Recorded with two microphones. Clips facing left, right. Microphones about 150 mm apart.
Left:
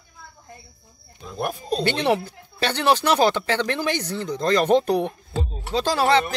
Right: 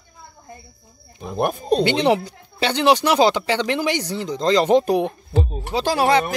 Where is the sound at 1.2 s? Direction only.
65° right (ahead or behind).